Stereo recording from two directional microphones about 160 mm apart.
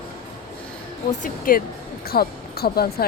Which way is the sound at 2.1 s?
75° left (ahead or behind).